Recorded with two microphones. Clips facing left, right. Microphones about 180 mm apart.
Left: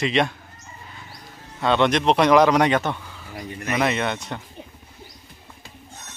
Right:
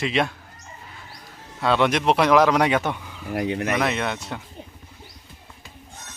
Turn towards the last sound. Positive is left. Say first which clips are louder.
# left 1 dB
turn(degrees=-5)  # may be behind; listen again after turning